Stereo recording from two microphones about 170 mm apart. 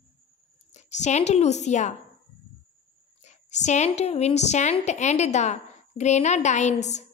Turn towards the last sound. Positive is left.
turn(degrees=45)  # may be behind; listen again after turning